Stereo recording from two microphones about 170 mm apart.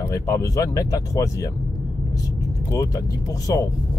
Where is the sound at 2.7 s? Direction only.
20° left (ahead or behind).